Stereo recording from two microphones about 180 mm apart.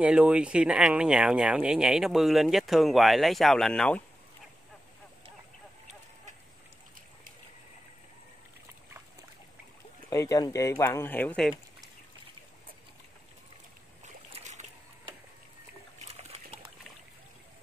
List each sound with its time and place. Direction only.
0.0 s speech: 5° right (ahead or behind)
10.0 s speech: 20° left (ahead or behind)
14.0 s a sound: 40° right (ahead or behind)
16.0 s dog: 35° right (ahead or behind)